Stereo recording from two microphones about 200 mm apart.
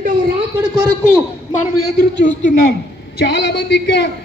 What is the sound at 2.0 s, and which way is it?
A man's voice, 60° left (ahead or behind).